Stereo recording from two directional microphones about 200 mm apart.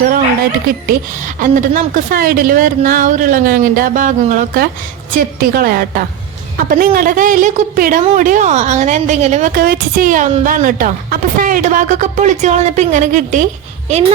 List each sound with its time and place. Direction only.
0.7 s a woman's voice: 40° right (ahead or behind)
9.6 s a woman's voice: 45° right (ahead or behind)